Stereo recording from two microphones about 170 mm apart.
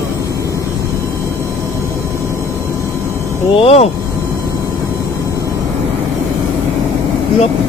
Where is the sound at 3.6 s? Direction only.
35° left (ahead or behind).